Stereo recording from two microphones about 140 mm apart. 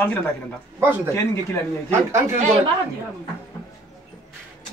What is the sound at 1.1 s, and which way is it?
Speech, 20° left (ahead or behind).